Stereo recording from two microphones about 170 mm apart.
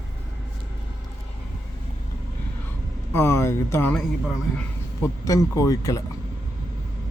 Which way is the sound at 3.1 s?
15° left (ahead or behind).